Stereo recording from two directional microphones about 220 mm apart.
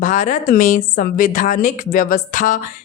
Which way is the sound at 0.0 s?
35° left (ahead or behind).